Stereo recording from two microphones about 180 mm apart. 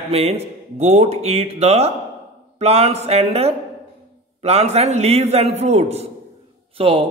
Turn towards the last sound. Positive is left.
turn(degrees=-30)  # may be behind; listen again after turning